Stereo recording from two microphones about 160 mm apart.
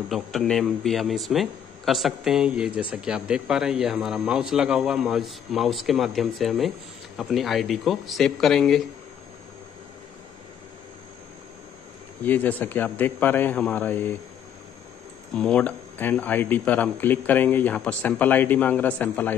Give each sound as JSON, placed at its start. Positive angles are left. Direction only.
{"t": 0.1, "sound": "speech", "side_deg": 0}
{"t": 12.2, "sound": "speech", "side_deg": 10}
{"t": 15.3, "sound": "speech", "side_deg": 5}